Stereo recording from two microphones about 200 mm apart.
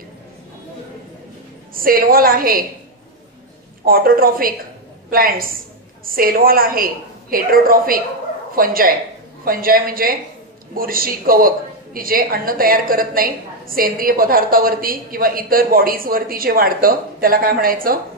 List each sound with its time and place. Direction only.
1.7 s a woman's voice: 45° right (ahead or behind)
3.8 s a woman's voice: 45° right (ahead or behind)